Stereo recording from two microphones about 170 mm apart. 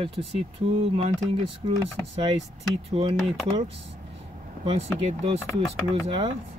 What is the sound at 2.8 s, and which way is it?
Speech, 35° right (ahead or behind).